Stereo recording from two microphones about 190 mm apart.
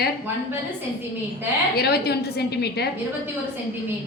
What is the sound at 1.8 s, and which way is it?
A woman's voice, 55° left (ahead or behind).